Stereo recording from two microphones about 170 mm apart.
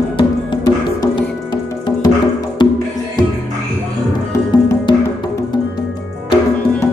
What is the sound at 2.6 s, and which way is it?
Music, 30° left (ahead or behind).